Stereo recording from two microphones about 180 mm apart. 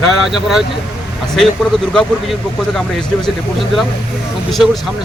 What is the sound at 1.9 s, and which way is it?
Speech, 5° left (ahead or behind).